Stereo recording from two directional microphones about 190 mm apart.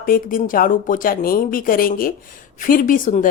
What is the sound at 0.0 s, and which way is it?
A woman's voice, 50° left (ahead or behind).